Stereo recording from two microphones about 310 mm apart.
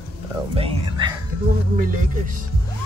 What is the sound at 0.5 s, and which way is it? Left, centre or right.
Whispering, centre.